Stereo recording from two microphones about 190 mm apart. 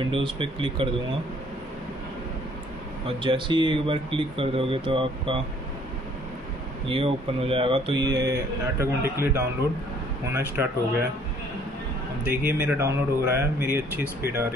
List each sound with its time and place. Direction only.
0.0 s speech: 25° right (ahead or behind)
3.2 s speech: 25° right (ahead or behind)
6.9 s speech: 30° right (ahead or behind); by 10.7 s 10° right (ahead or behind)
12.3 s speech: 10° right (ahead or behind)